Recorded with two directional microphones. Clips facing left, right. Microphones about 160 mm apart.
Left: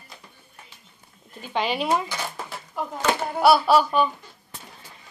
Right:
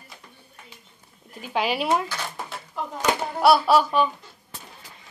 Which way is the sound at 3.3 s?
Centre (ahead or behind).